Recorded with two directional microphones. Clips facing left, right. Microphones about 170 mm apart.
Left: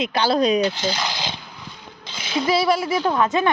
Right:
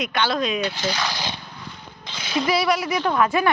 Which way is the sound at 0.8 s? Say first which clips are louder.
Left 1 dB; 25° left (ahead or behind).